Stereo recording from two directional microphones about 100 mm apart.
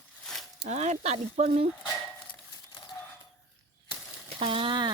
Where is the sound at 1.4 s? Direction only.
90° right.